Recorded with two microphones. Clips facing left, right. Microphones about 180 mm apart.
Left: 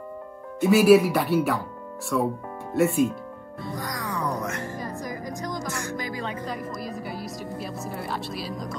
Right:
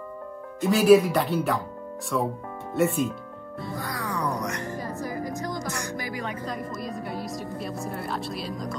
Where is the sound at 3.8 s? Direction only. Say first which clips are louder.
Even; 15° left (ahead or behind).